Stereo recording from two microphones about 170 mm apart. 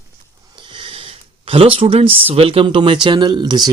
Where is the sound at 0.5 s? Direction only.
30° right (ahead or behind).